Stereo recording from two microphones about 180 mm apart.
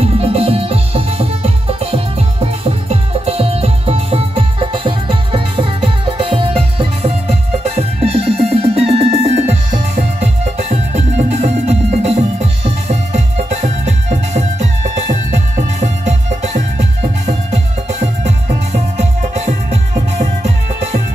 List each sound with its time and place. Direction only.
0.0 s music: 35° right (ahead or behind)